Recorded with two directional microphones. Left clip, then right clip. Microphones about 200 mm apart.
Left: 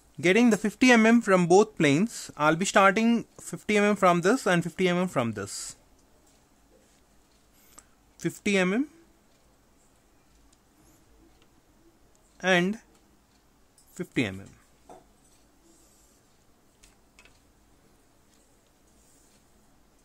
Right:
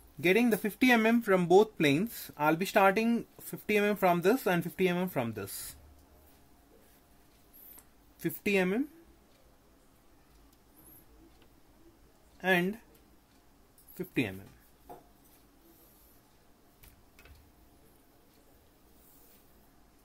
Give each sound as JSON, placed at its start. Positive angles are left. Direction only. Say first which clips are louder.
{"t": 0.2, "sound": "speech", "louder": "left 5 dB", "side_deg": 30}
{"t": 8.2, "sound": "speech", "louder": "left 4 dB", "side_deg": 30}
{"t": 12.4, "sound": "speech", "louder": "left 5 dB", "side_deg": 35}
{"t": 13.9, "sound": "speech", "louder": "left 4 dB", "side_deg": 35}